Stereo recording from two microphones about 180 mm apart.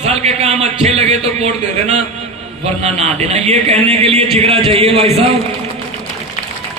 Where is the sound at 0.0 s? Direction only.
35° right (ahead or behind).